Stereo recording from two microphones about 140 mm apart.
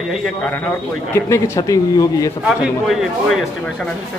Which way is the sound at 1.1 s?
20° left (ahead or behind).